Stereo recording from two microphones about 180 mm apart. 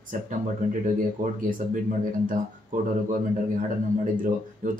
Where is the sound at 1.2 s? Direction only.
50° right (ahead or behind).